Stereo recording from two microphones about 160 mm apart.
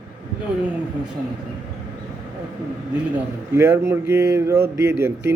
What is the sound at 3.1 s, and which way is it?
A man's voice, 15° right (ahead or behind).